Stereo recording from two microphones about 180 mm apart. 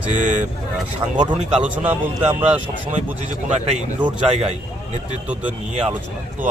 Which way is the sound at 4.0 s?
35° right (ahead or behind).